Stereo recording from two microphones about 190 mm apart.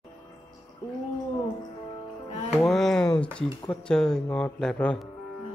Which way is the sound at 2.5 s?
Centre (ahead or behind).